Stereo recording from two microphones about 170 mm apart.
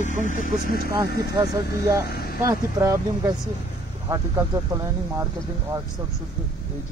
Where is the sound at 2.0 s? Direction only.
65° left (ahead or behind).